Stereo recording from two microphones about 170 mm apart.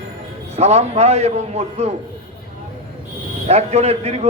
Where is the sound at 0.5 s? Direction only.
40° right (ahead or behind).